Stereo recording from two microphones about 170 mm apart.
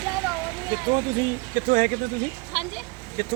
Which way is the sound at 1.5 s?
60° right (ahead or behind).